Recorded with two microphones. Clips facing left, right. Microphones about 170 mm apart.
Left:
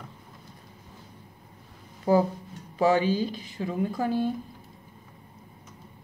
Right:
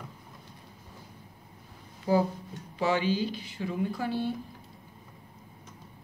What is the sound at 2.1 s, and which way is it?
Speech, 45° left (ahead or behind).